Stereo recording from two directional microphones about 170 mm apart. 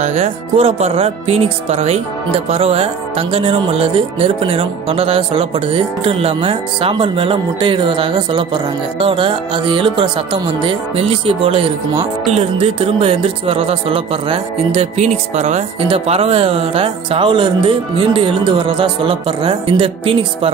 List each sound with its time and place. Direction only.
0.0 s music: 40° right (ahead or behind)